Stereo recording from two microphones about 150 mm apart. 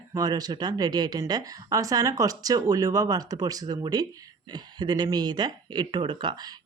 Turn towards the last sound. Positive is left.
turn(degrees=-30)  # may be behind; listen again after turning